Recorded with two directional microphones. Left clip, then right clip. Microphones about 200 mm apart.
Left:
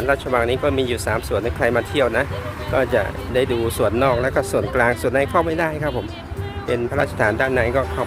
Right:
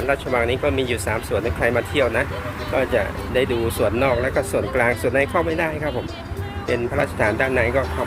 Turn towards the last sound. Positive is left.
turn(degrees=25)  # may be behind; listen again after turning